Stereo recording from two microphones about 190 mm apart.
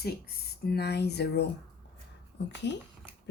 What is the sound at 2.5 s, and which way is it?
Speech, 65° left (ahead or behind).